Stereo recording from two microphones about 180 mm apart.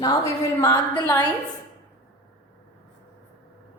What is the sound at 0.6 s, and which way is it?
Speech, 20° left (ahead or behind).